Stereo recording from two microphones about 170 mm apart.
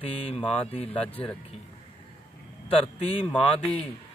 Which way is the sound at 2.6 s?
35° left (ahead or behind).